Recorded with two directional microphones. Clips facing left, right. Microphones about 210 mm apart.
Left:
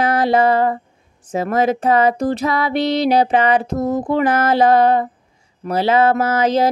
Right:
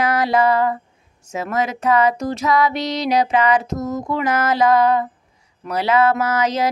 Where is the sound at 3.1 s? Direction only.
30° left (ahead or behind).